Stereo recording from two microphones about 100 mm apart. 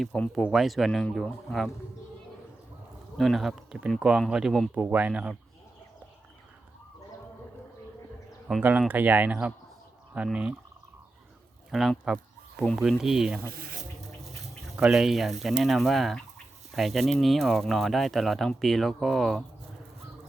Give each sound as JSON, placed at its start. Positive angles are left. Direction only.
{"t": 0.0, "sound": "speech", "side_deg": 5}
{"t": 3.2, "sound": "speech", "side_deg": 0}
{"t": 4.7, "sound": "speech", "side_deg": -15}
{"t": 8.9, "sound": "speech", "side_deg": -20}
{"t": 11.7, "sound": "speech", "side_deg": 0}
{"t": 14.8, "sound": "speech", "side_deg": -5}